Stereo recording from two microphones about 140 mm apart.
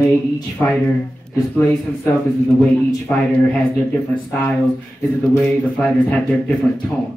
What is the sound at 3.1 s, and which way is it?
A man's voice, 10° left (ahead or behind).